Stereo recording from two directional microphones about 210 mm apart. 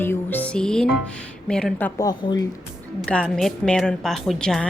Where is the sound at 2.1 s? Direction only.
20° left (ahead or behind).